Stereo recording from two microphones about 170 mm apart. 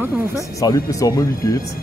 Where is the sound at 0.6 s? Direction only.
20° left (ahead or behind).